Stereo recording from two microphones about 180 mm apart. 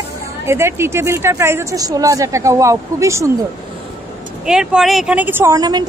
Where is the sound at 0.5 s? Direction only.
15° right (ahead or behind).